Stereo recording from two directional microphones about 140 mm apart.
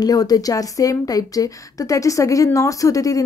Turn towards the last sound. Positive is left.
turn(degrees=25)  # may be behind; listen again after turning